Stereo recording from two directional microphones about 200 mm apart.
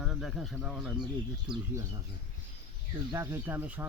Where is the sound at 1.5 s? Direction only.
20° right (ahead or behind).